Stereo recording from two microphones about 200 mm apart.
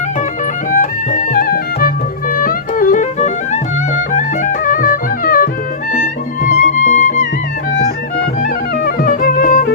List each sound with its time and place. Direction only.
0.7 s music: 40° left (ahead or behind)
8.4 s music: 45° left (ahead or behind)